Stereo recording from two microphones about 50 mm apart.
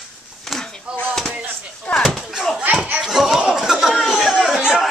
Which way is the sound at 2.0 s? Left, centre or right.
Centre.